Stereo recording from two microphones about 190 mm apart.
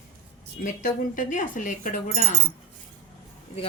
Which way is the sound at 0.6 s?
45° left (ahead or behind).